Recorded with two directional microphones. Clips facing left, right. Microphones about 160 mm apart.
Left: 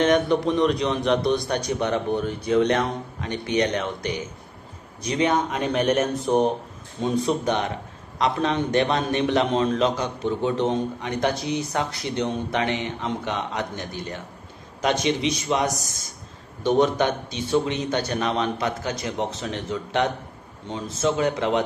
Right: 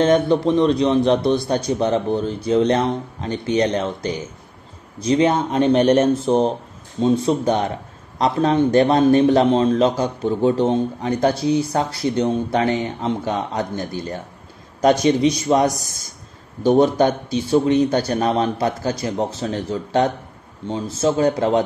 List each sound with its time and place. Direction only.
0.0 s a man's voice: 30° right (ahead or behind)